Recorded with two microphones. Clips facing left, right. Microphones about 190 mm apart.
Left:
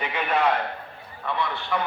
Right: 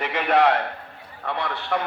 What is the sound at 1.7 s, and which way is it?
Speech, 65° right (ahead or behind).